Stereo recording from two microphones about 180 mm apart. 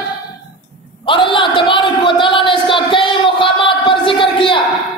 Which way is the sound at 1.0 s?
25° left (ahead or behind).